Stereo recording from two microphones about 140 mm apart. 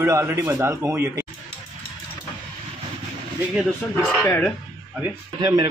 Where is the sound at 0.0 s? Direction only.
15° right (ahead or behind).